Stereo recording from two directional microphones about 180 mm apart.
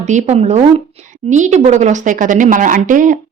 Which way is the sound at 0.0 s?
40° right (ahead or behind).